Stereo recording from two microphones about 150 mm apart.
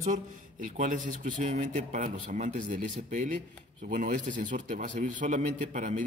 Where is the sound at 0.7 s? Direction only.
60° right (ahead or behind).